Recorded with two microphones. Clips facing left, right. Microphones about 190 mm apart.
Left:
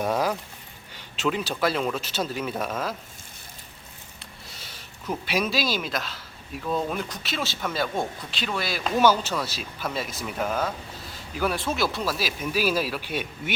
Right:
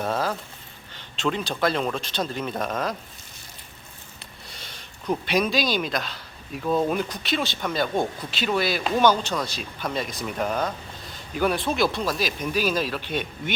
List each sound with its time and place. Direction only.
0.0 s a sound: 15° left (ahead or behind)
0.9 s speech: 5° left (ahead or behind)
4.4 s speech: 5° left (ahead or behind)